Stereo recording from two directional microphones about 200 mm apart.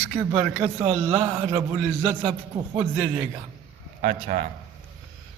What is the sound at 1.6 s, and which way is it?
A man's voice, 25° right (ahead or behind).